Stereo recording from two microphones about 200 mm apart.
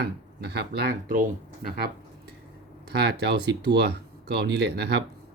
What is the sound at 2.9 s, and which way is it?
Speech, 55° right (ahead or behind).